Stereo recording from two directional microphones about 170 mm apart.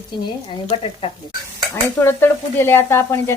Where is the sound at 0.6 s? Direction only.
35° left (ahead or behind).